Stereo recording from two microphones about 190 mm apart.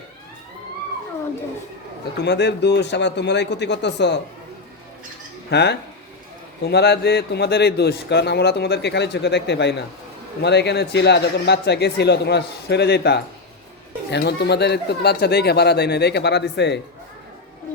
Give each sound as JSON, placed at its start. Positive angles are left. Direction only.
{"t": 2.2, "sound": "a man's voice", "side_deg": 65}
{"t": 5.5, "sound": "a man's voice", "side_deg": 65}